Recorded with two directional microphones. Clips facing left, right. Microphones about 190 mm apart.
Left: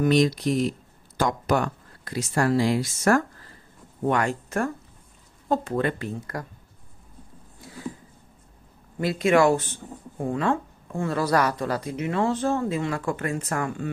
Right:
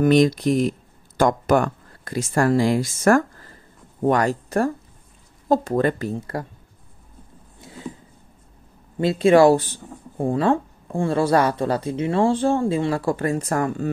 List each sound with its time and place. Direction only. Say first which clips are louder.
0.0 s speech: right 4 dB; 50° right (ahead or behind)
4.0 s speech: right 5 dB; 40° right (ahead or behind)
7.6 s a sound: right 1 dB; 25° right (ahead or behind)
8.9 s speech: right 5 dB; 25° right (ahead or behind)